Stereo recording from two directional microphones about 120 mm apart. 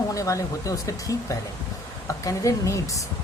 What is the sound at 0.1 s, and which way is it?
Speech, 25° left (ahead or behind).